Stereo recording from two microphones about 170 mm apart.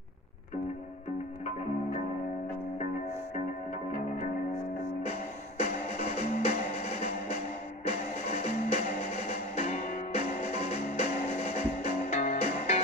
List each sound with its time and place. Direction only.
5.6 s music: 40° left (ahead or behind)
8.2 s music: 45° left (ahead or behind)